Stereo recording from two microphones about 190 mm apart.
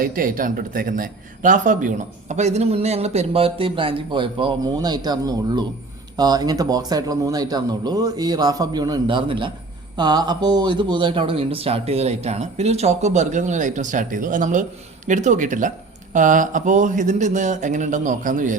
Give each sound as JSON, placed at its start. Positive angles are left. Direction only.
{"t": 0.0, "sound": "a man's voice", "side_deg": -45}